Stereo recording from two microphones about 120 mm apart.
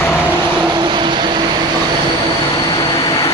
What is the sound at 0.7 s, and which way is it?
Vehicle, 40° right (ahead or behind).